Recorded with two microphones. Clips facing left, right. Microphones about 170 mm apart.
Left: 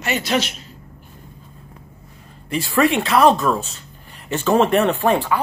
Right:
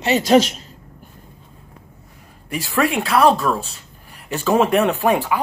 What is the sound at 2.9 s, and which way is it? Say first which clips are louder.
Speech: right 1 dB; 5° right (ahead or behind).